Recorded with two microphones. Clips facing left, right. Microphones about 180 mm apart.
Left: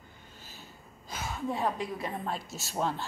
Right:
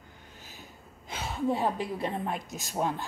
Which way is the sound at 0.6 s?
25° right (ahead or behind).